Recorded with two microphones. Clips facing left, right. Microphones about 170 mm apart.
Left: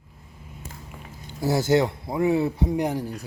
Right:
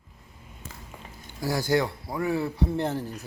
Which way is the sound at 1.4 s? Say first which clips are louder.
Left 4 dB; 25° left (ahead or behind).